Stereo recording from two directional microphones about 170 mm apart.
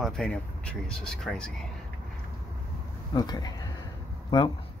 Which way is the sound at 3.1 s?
20° left (ahead or behind).